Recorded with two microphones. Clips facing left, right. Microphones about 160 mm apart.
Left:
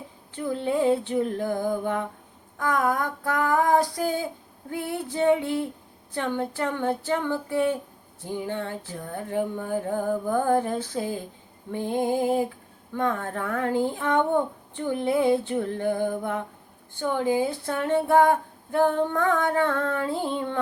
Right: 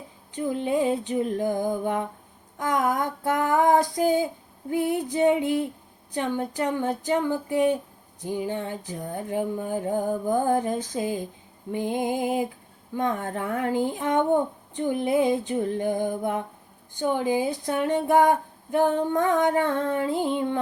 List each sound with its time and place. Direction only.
0.3 s speech: 15° right (ahead or behind)
2.6 s female singing: 20° right (ahead or behind)
4.7 s speech: 15° right (ahead or behind)